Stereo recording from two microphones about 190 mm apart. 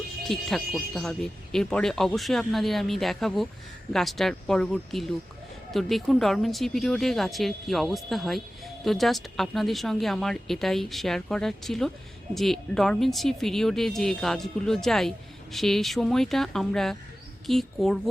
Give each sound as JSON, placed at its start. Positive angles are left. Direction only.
{"t": 0.3, "sound": "speech", "side_deg": 0}